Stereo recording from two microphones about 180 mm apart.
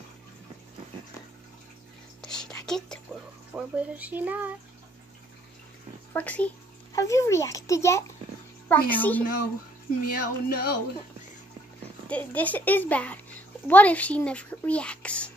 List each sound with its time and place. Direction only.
2.2 s a sound: 5° left (ahead or behind)
3.5 s speech: 5° right (ahead or behind)
6.1 s speech: 10° left (ahead or behind)
10.0 s speech: 55° left (ahead or behind)
12.1 s speech: 10° left (ahead or behind)